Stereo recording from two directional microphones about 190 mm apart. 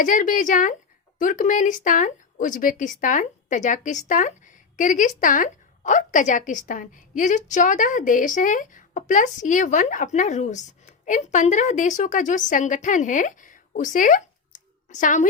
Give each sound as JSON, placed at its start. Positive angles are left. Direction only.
{"t": 0.0, "sound": "a woman's voice", "side_deg": 45}